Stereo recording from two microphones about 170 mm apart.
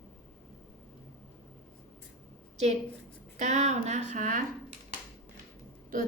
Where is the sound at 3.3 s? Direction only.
40° right (ahead or behind).